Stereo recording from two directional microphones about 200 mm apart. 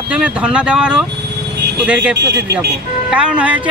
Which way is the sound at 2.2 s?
60° right (ahead or behind).